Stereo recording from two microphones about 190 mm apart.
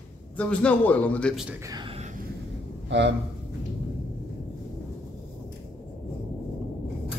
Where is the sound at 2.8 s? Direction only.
70° right (ahead or behind).